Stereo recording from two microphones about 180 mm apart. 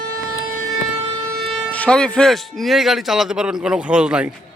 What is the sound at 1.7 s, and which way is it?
Speech, 5° left (ahead or behind).